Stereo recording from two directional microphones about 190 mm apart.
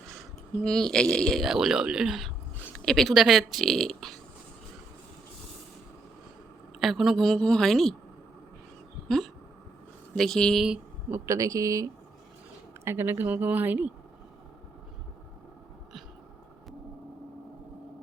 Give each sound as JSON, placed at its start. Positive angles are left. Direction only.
{"t": 0.1, "sound": "speech", "side_deg": 0}
{"t": 6.7, "sound": "a woman's voice", "side_deg": 0}
{"t": 9.0, "sound": "a sound", "side_deg": 0}
{"t": 10.2, "sound": "a woman's voice", "side_deg": 5}
{"t": 11.1, "sound": "speech", "side_deg": -15}